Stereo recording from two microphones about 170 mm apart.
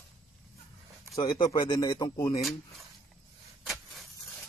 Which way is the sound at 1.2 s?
25° left (ahead or behind).